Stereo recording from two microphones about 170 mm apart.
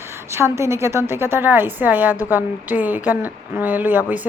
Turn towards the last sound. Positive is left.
turn(degrees=-10)  # may be behind; listen again after turning